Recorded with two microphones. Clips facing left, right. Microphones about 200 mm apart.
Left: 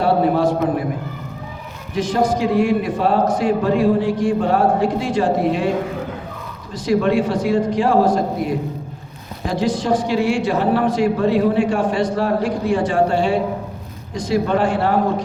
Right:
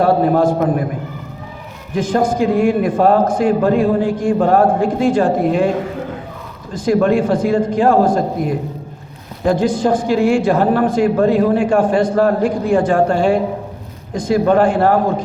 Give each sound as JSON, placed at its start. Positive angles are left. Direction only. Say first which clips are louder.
{"t": 0.0, "sound": "a man's voice", "louder": "right 3 dB", "side_deg": -50}
{"t": 2.0, "sound": "a man's voice", "louder": "right 2 dB", "side_deg": -50}
{"t": 6.7, "sound": "a man's voice", "louder": "right 3 dB", "side_deg": -50}
{"t": 9.5, "sound": "a man's voice", "louder": "right 4 dB", "side_deg": -50}